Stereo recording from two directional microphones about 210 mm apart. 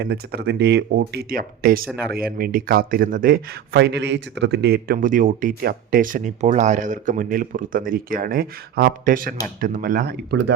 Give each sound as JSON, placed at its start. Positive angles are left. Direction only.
{"t": 0.0, "sound": "speech", "side_deg": -50}